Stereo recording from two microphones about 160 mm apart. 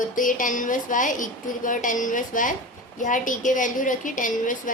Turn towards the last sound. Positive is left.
turn(degrees=55)  # may be behind; listen again after turning